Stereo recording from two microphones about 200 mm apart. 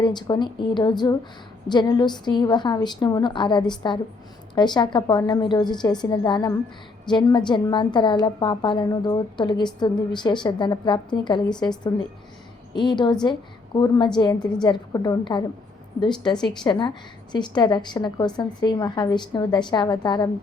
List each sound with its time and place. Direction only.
0.0 s a woman's voice: 20° left (ahead or behind)
12.7 s a woman's voice: 20° left (ahead or behind)